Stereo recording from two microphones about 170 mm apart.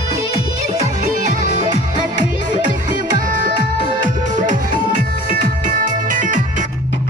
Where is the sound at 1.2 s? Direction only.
50° right (ahead or behind).